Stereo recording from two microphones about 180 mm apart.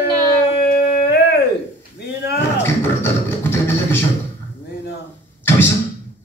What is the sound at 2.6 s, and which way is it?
Music, 10° left (ahead or behind).